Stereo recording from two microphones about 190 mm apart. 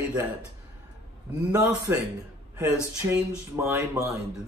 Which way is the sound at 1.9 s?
15° right (ahead or behind).